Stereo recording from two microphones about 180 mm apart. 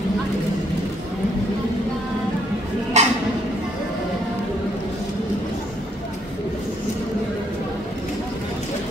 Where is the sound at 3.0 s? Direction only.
40° right (ahead or behind).